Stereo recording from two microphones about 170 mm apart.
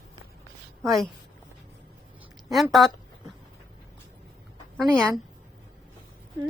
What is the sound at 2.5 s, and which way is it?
Speech, centre (ahead or behind).